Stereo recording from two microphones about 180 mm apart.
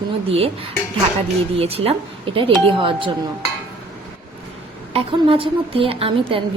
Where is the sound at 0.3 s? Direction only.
35° right (ahead or behind).